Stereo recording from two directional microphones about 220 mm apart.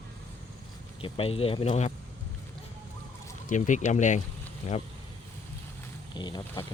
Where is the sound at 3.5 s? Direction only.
35° left (ahead or behind).